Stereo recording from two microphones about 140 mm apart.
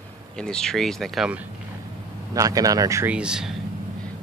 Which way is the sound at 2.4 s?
25° right (ahead or behind).